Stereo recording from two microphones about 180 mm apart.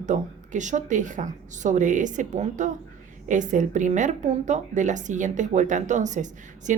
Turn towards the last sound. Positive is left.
turn(degrees=-45)  # may be behind; listen again after turning